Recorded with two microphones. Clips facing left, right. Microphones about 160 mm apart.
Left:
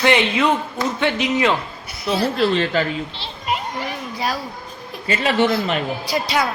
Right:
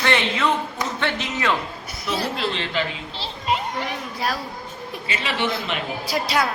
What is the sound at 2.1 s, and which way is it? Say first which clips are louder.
Speech: left 5 dB; 35° left (ahead or behind).